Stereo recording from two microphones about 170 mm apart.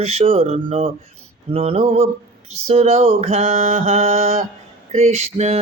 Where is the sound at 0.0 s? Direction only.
35° right (ahead or behind).